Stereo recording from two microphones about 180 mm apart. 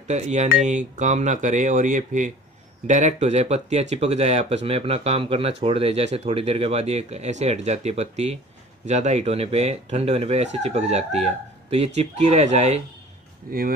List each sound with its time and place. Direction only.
0.1 s speech: 40° right (ahead or behind)
13.5 s speech: 55° right (ahead or behind)